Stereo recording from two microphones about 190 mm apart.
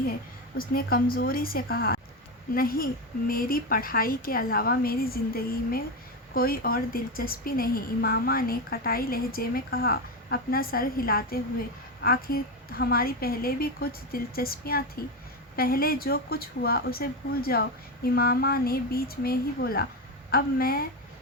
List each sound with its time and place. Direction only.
0.5 s a woman's voice: 50° left (ahead or behind)